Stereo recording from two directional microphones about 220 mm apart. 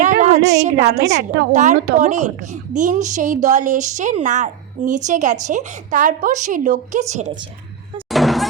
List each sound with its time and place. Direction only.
0.0 s a woman's voice: 35° right (ahead or behind)
8.1 s music: centre (ahead or behind)